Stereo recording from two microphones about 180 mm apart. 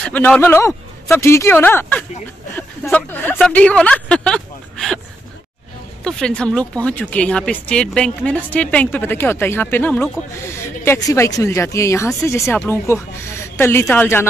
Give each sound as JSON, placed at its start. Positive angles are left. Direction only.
{"t": 0.0, "sound": "speech", "side_deg": 5}
{"t": 6.0, "sound": "speech", "side_deg": 5}